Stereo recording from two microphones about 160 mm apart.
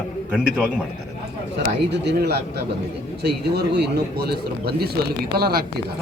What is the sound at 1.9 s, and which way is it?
Speech, 90° right.